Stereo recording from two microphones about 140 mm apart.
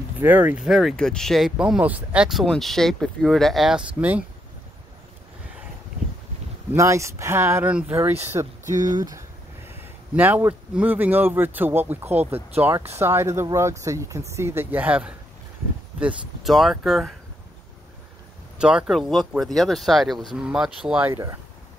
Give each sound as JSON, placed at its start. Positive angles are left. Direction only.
{"t": 0.2, "sound": "speech", "side_deg": -15}
{"t": 6.7, "sound": "speech", "side_deg": -20}
{"t": 9.7, "sound": "a man's voice", "side_deg": -10}
{"t": 18.6, "sound": "speech", "side_deg": -5}
{"t": 21.1, "sound": "speech", "side_deg": -20}